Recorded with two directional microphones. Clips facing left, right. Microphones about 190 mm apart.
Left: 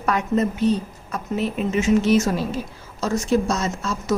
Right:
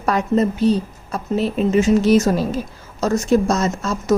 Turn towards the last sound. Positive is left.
turn(degrees=-45)  # may be behind; listen again after turning